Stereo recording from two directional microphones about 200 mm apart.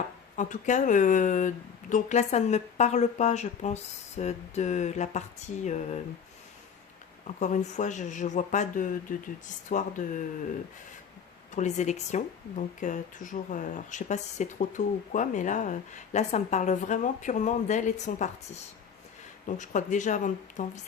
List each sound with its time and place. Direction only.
0.3 s a woman's voice: 40° left (ahead or behind)
7.3 s a woman's voice: 35° left (ahead or behind)
11.5 s a woman's voice: 35° left (ahead or behind)